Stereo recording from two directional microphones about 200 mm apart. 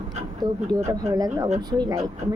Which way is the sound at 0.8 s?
20° right (ahead or behind).